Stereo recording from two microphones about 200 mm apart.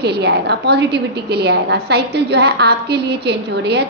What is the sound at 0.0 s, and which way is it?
A woman's voice, 55° right (ahead or behind).